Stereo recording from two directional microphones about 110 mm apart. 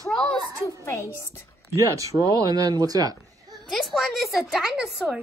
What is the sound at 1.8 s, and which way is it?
Speech, 30° right (ahead or behind).